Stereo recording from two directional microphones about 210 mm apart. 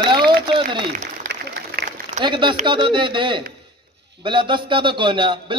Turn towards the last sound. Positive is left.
turn(degrees=-20)  # may be behind; listen again after turning